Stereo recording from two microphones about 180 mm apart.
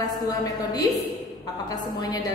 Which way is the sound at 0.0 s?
20° left (ahead or behind).